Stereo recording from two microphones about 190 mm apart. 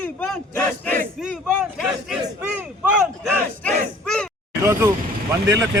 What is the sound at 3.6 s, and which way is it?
Battle cry, 5° left (ahead or behind).